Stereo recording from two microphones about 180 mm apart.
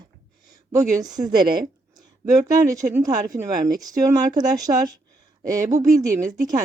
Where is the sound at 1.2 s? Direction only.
55° right (ahead or behind).